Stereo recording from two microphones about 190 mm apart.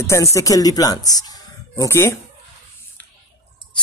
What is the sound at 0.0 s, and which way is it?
Speech, 15° left (ahead or behind).